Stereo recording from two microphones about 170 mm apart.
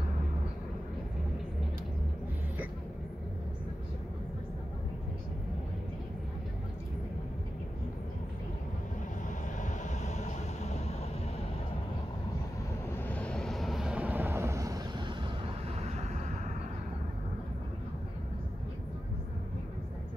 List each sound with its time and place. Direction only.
9.6 s vehicle: 45° left (ahead or behind)
12.9 s vehicle: 10° left (ahead or behind); by 15.9 s 30° right (ahead or behind)